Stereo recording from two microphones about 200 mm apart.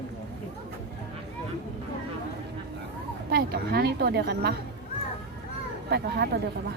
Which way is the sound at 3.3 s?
50° right (ahead or behind).